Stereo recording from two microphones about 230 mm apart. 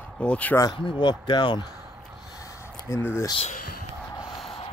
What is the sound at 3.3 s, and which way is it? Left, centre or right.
Speech, left.